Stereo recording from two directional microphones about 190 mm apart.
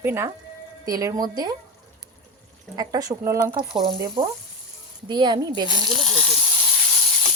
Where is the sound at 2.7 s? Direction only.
20° right (ahead or behind).